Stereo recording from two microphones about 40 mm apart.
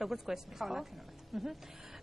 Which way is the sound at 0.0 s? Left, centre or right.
Centre.